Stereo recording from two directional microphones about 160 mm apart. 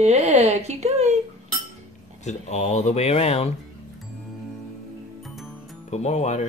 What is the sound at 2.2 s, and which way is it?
Speech, 45° left (ahead or behind).